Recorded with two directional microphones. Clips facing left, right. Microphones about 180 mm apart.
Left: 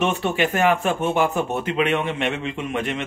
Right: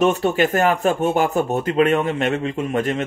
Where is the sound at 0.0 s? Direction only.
40° right (ahead or behind).